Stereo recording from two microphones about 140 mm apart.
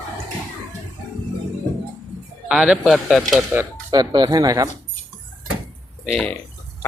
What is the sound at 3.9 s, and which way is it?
Speech, 30° right (ahead or behind).